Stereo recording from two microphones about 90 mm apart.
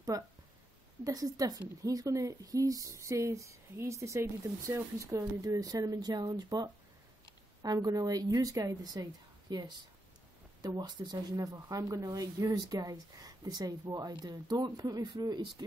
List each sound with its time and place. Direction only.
0.1 s a woman's voice: 40° right (ahead or behind)
9.5 s speech: 55° right (ahead or behind)